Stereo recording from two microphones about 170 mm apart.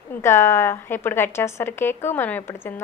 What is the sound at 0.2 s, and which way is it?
A woman's voice, 15° left (ahead or behind).